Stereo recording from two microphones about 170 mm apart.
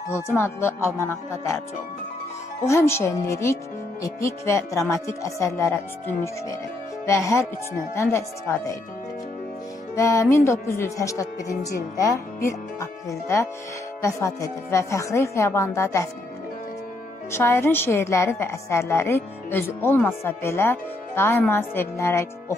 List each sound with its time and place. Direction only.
0.1 s a woman's voice: 15° left (ahead or behind)
2.6 s a woman's voice: 15° left (ahead or behind)
7.1 s a woman's voice: 15° left (ahead or behind)
9.9 s a woman's voice: 20° left (ahead or behind)
13.1 s a woman's voice: 15° left (ahead or behind)
17.3 s a woman's voice: 15° left (ahead or behind)